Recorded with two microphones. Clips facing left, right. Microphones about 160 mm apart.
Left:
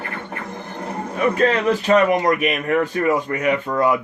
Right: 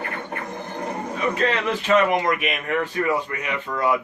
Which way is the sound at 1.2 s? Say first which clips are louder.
Left 6 dB; 45° left (ahead or behind).